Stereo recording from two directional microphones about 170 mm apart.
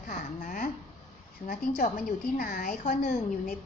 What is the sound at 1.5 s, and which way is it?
A woman's voice, 55° left (ahead or behind).